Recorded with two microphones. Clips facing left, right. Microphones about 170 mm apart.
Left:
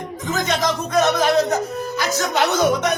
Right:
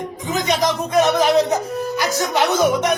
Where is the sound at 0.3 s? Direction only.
15° right (ahead or behind).